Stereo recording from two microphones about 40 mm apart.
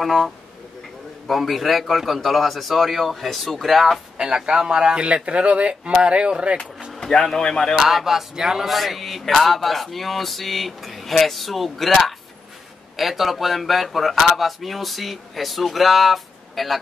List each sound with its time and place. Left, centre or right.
0.0 s male singing: centre
1.3 s male singing: centre
4.5 s speech: right
7.0 s speech: centre
7.7 s speech: centre
8.6 s male singing: centre
12.9 s male singing: centre